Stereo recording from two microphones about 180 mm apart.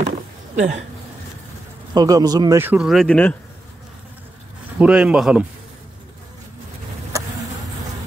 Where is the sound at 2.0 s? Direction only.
20° right (ahead or behind); by 3.3 s 5° left (ahead or behind).